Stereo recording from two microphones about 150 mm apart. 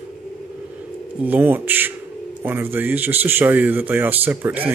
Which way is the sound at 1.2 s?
10° right (ahead or behind).